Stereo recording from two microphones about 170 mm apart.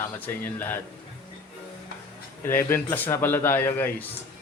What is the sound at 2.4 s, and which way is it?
Speech, 15° left (ahead or behind).